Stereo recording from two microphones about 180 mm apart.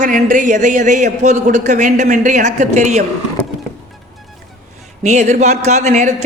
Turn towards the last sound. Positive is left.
turn(degrees=-40)  # may be behind; listen again after turning